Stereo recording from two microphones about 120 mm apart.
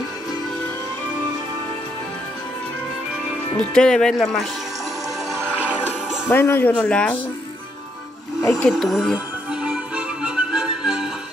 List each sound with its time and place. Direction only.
3.5 s speech: 5° left (ahead or behind)
6.2 s speech: 20° left (ahead or behind)
8.4 s speech: 25° left (ahead or behind)
8.6 s music: centre (ahead or behind)